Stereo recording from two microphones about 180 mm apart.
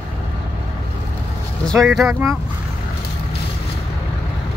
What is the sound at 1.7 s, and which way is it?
Speech, centre (ahead or behind).